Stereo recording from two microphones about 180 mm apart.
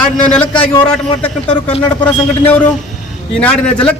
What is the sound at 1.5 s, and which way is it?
Speech, 25° left (ahead or behind).